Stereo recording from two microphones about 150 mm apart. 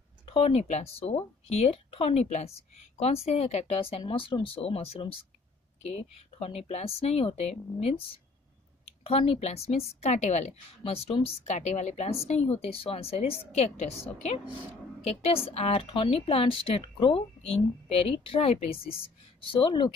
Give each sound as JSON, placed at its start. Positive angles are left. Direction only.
{"t": 0.3, "sound": "a woman's voice", "side_deg": 40}
{"t": 15.2, "sound": "speech", "side_deg": 40}